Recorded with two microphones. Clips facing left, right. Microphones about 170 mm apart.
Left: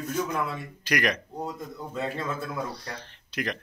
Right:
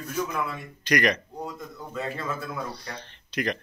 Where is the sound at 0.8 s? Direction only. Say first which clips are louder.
Right 3 dB; 5° left (ahead or behind).